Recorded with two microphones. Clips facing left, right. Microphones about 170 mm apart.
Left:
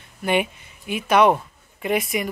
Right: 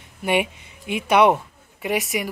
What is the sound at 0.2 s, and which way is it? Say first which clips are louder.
Speech: even; 15° right (ahead or behind).